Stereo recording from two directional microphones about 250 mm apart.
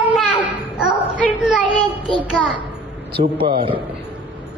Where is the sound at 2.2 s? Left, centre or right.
Centre.